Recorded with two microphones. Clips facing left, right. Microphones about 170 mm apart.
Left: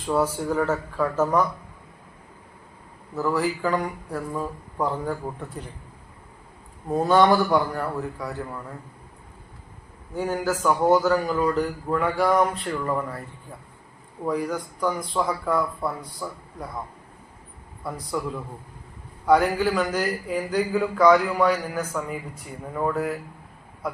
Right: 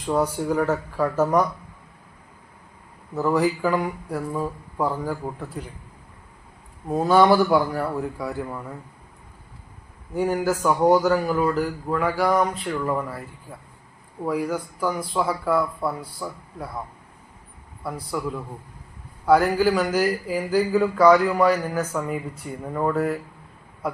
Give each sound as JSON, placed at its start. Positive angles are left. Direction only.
{"t": 0.1, "sound": "a man's voice", "side_deg": -10}
{"t": 3.2, "sound": "speech", "side_deg": -20}
{"t": 3.6, "sound": "a man's voice", "side_deg": -5}
{"t": 6.8, "sound": "a man's voice", "side_deg": 0}
{"t": 10.2, "sound": "a man's voice", "side_deg": -10}
{"t": 14.3, "sound": "a man's voice", "side_deg": -5}
{"t": 17.8, "sound": "a man's voice", "side_deg": 0}
{"t": 19.2, "sound": "a man's voice", "side_deg": 0}